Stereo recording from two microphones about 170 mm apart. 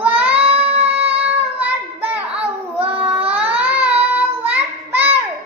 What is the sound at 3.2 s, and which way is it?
Baby cry, 10° right (ahead or behind).